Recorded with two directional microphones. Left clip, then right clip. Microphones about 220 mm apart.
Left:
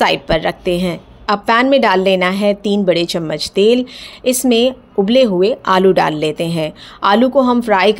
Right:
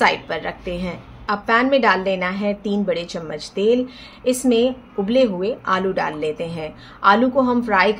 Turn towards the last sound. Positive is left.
turn(degrees=40)  # may be behind; listen again after turning